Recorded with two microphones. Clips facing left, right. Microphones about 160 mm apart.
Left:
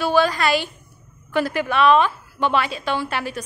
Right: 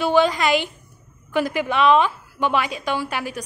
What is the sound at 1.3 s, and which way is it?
A woman's voice, 15° right (ahead or behind).